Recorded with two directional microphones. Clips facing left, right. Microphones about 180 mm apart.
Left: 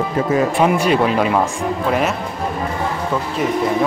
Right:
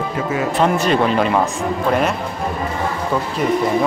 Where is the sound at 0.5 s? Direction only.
10° left (ahead or behind).